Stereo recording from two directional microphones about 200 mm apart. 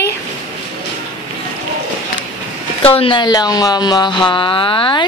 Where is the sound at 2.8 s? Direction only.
30° left (ahead or behind).